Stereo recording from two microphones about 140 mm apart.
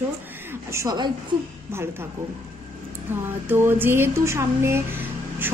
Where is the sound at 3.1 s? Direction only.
15° right (ahead or behind).